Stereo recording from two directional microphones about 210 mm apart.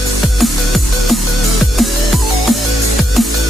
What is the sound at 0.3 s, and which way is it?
Music, centre (ahead or behind).